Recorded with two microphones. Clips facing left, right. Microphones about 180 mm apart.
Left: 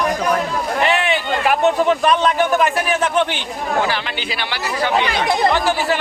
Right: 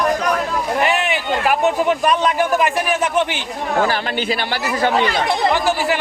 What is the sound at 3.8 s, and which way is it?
Speech, 45° right (ahead or behind).